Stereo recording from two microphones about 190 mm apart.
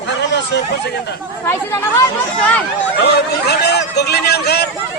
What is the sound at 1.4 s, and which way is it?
Speech, 15° left (ahead or behind).